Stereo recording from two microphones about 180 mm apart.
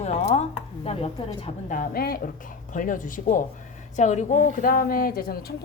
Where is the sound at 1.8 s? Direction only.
55° left (ahead or behind).